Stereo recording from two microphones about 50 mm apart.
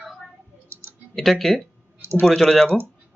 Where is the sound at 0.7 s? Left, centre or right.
Right.